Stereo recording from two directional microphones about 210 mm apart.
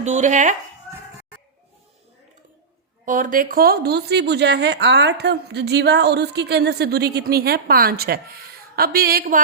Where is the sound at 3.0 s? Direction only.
40° right (ahead or behind).